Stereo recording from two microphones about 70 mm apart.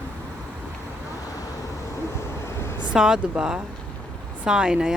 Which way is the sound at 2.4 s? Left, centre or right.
Left.